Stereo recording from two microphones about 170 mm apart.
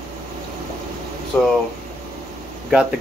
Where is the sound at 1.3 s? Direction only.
5° left (ahead or behind).